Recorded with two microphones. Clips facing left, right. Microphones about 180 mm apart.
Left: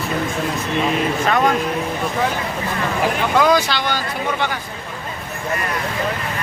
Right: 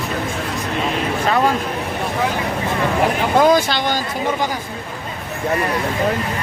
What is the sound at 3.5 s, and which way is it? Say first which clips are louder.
Speech: right 2 dB; 50° right (ahead or behind).